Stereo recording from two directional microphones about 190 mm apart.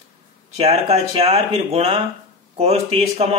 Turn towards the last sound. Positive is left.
turn(degrees=-35)  # may be behind; listen again after turning